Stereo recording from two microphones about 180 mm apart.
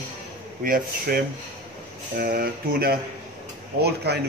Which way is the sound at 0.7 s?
50° right (ahead or behind).